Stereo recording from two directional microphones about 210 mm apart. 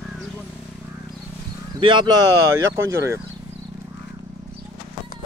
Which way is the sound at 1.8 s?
20° right (ahead or behind).